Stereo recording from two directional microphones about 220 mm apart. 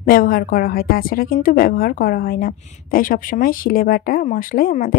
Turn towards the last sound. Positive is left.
turn(degrees=40)  # may be behind; listen again after turning